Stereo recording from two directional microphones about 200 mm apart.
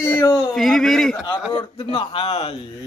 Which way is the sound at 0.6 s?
Centre (ahead or behind).